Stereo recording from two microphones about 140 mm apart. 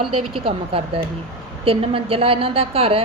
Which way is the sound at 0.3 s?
40° right (ahead or behind).